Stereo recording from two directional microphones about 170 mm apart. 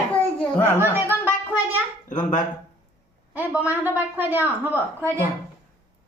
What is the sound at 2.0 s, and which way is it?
Speech, 50° left (ahead or behind).